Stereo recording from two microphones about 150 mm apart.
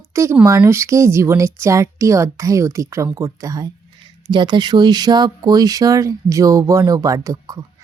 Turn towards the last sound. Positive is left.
turn(degrees=-20)  # may be behind; listen again after turning